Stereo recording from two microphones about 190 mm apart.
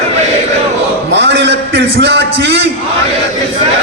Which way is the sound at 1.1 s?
65° right (ahead or behind).